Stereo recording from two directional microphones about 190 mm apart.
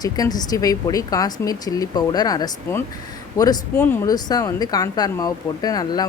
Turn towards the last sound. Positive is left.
turn(degrees=20)  # may be behind; listen again after turning